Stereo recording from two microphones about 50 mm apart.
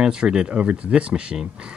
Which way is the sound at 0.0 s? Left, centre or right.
Centre.